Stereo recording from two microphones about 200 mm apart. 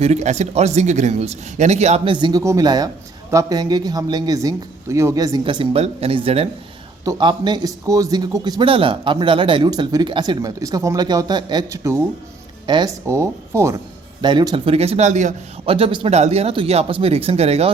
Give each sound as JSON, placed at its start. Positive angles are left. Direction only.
{"t": 0.0, "sound": "a man's voice", "side_deg": -35}